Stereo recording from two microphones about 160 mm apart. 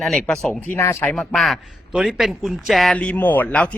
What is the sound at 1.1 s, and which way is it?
A man's voice, 5° left (ahead or behind).